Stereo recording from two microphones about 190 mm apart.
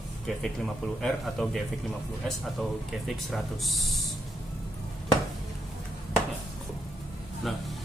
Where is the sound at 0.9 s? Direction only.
Centre (ahead or behind).